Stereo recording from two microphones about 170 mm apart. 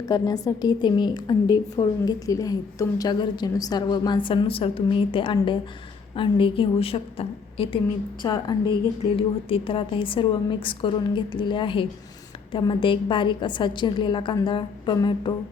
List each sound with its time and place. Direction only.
0.0 s a woman's voice: 20° left (ahead or behind)